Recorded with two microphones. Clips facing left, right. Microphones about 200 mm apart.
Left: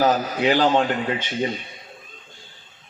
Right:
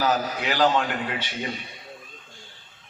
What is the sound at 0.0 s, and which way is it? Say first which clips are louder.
Speech: left 5 dB; 40° left (ahead or behind).